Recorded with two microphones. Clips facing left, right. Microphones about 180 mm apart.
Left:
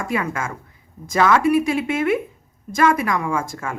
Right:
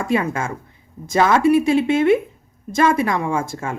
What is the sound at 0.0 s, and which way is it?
Speech, 25° right (ahead or behind).